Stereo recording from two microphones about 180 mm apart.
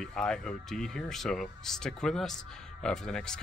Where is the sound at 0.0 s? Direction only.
5° left (ahead or behind).